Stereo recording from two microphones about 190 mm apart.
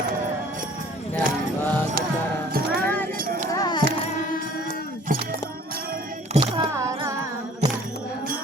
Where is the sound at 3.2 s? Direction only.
45° right (ahead or behind).